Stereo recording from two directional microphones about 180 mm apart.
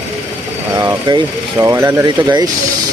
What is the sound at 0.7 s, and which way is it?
Speech, 20° right (ahead or behind).